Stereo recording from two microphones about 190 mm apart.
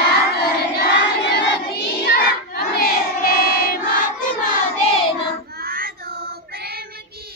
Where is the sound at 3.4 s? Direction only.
50° left (ahead or behind).